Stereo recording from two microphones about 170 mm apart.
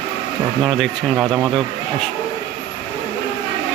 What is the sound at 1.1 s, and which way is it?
Speech, 15° right (ahead or behind).